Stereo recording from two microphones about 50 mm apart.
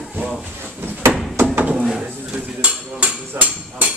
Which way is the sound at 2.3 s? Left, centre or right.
Right.